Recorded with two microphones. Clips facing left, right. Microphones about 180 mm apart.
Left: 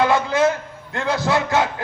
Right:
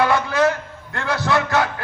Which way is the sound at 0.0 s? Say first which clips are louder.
Left 1 dB; 20° left (ahead or behind).